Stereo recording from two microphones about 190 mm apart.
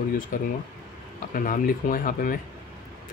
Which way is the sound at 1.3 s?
45° left (ahead or behind).